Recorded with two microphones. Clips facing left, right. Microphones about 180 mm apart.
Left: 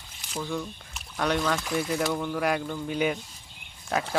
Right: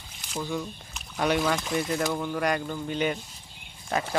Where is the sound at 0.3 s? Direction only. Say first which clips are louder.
Right 1 dB; 5° right (ahead or behind).